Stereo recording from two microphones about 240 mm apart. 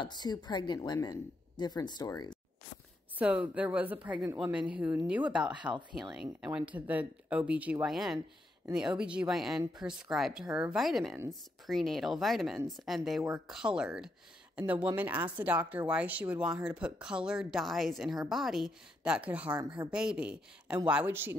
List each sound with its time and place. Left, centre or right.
0.0 s a woman's voice: centre
3.2 s speech: centre
19.5 s speech: centre
19.9 s speech: centre